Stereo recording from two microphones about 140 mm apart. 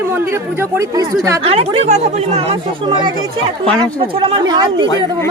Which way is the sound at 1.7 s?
55° right (ahead or behind).